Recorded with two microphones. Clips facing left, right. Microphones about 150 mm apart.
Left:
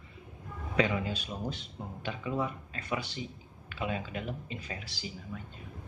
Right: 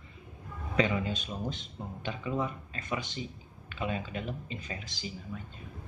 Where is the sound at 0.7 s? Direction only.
10° left (ahead or behind).